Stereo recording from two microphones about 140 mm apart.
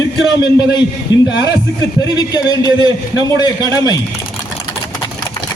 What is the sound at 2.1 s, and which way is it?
Speech, 30° left (ahead or behind).